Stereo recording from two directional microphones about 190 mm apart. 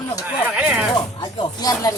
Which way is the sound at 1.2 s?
20° left (ahead or behind).